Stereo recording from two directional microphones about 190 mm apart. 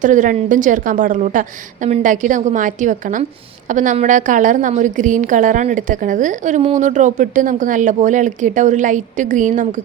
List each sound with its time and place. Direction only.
0.0 s a woman's voice: 40° right (ahead or behind)